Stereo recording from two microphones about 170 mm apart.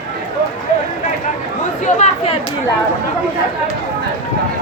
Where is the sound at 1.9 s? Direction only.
40° left (ahead or behind).